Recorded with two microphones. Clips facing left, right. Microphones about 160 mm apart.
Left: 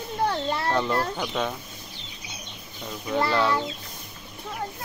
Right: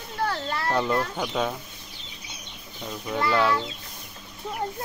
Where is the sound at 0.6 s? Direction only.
5° right (ahead or behind).